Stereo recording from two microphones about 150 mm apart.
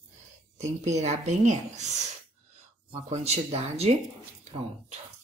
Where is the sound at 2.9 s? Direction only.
45° right (ahead or behind).